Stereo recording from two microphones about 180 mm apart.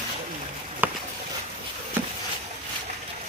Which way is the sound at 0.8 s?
10° right (ahead or behind).